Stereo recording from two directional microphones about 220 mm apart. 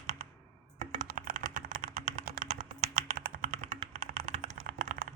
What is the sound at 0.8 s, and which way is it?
Typing, 35° right (ahead or behind).